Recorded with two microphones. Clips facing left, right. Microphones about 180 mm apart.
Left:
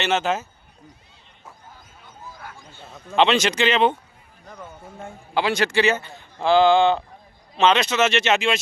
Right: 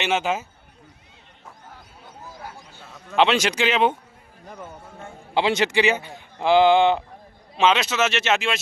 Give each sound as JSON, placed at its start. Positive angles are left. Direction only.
{"t": 0.0, "sound": "speech", "side_deg": -10}
{"t": 2.3, "sound": "a sound", "side_deg": -35}
{"t": 3.2, "sound": "speech", "side_deg": -10}
{"t": 5.3, "sound": "a man's voice", "side_deg": -25}
{"t": 7.5, "sound": "speech", "side_deg": -5}